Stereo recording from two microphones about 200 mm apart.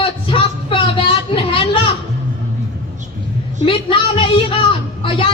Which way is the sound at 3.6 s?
25° left (ahead or behind).